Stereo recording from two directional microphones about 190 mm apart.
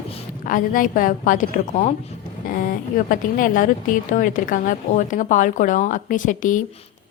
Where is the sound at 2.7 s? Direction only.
45° left (ahead or behind).